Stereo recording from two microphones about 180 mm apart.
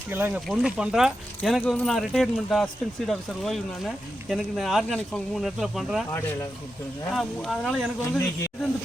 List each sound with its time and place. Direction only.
0.1 s speech: 10° right (ahead or behind)
6.1 s speech: 20° left (ahead or behind)
7.1 s speech: centre (ahead or behind)